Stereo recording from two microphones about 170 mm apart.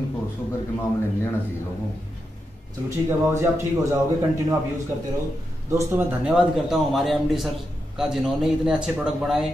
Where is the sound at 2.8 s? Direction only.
15° right (ahead or behind).